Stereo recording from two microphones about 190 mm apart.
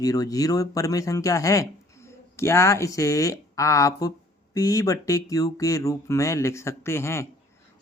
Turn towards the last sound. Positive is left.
turn(degrees=15)  # may be behind; listen again after turning